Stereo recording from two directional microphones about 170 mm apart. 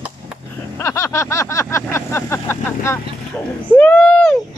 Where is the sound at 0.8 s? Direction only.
15° left (ahead or behind).